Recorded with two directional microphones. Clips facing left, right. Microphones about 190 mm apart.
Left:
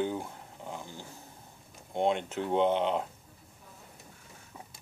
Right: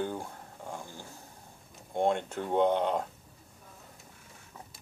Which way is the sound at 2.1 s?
15° left (ahead or behind).